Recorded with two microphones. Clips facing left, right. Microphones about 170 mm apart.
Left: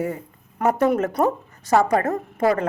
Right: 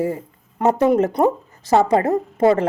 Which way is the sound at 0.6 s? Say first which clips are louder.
Right 3 dB; 20° right (ahead or behind).